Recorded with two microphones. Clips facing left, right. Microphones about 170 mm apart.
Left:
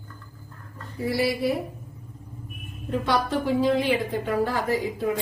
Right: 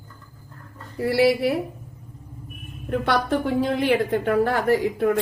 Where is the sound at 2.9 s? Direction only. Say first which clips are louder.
Right 2 dB; 65° right (ahead or behind).